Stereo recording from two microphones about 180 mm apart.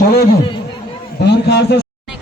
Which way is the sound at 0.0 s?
60° left (ahead or behind).